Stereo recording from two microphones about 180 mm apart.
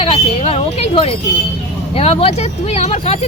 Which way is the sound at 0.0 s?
30° left (ahead or behind).